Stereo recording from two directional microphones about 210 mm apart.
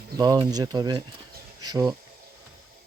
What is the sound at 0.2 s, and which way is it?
Speech, 20° right (ahead or behind).